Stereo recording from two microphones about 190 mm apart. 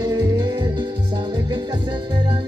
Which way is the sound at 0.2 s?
25° right (ahead or behind).